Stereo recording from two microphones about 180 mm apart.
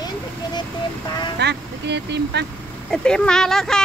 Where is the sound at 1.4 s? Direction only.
70° right (ahead or behind).